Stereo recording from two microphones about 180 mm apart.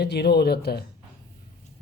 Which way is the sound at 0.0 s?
65° left (ahead or behind).